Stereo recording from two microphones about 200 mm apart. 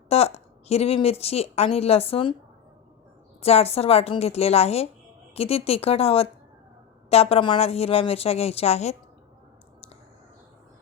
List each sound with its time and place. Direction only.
0.1 s a woman's voice: 30° left (ahead or behind)
3.4 s a woman's voice: 30° left (ahead or behind)